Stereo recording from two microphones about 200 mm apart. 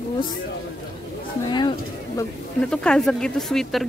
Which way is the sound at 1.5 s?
20° left (ahead or behind).